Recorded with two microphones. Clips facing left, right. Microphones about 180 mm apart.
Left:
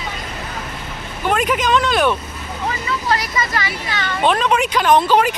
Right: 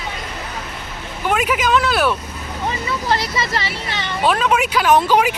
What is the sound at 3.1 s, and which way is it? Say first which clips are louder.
Speech: even; 25° right (ahead or behind).